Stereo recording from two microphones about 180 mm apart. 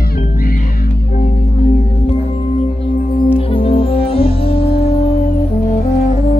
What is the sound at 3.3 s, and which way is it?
Music, 30° left (ahead or behind).